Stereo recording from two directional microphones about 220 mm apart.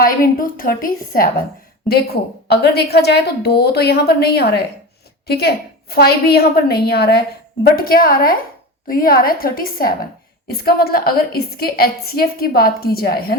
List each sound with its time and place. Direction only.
0.0 s a woman's voice: 40° left (ahead or behind)